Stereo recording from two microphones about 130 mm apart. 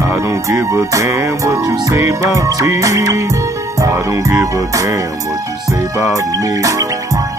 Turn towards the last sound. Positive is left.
turn(degrees=-25)  # may be behind; listen again after turning